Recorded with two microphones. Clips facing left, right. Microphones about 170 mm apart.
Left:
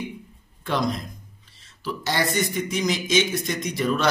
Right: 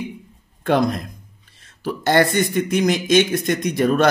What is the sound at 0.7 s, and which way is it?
Speech, 55° right (ahead or behind).